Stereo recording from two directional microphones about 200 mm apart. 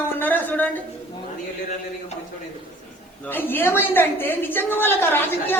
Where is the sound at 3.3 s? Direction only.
10° left (ahead or behind).